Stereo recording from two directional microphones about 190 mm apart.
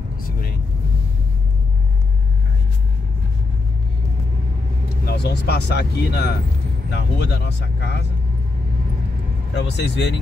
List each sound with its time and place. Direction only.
5.0 s speech: 60° left (ahead or behind)
9.7 s speech: 65° left (ahead or behind)